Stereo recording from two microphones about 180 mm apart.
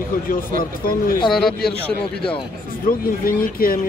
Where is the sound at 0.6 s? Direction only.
55° left (ahead or behind).